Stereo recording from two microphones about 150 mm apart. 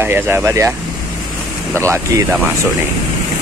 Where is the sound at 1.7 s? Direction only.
15° right (ahead or behind).